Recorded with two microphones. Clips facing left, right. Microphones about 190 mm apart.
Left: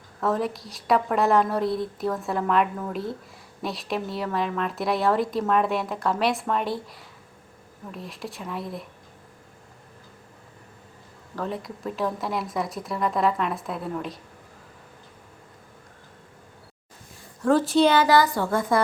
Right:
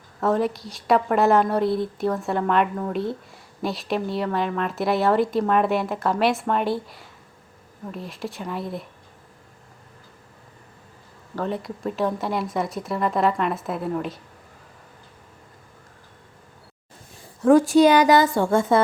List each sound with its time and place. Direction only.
0.2 s speech: centre (ahead or behind)
11.3 s speech: centre (ahead or behind)
17.4 s a woman's voice: 15° right (ahead or behind)